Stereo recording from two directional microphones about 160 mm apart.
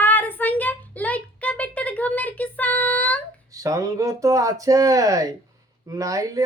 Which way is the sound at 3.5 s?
20° right (ahead or behind).